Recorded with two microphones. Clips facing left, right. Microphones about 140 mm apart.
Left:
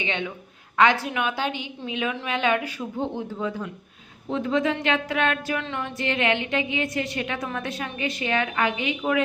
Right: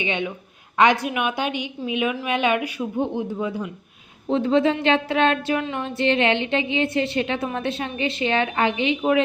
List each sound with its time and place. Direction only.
0.0 s a woman's voice: 15° right (ahead or behind)
4.3 s a woman's voice: 30° right (ahead or behind)